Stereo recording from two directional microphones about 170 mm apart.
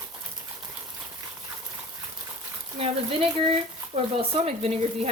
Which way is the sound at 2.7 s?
35° right (ahead or behind).